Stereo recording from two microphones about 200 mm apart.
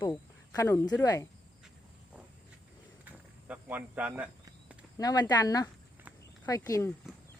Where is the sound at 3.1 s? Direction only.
10° right (ahead or behind).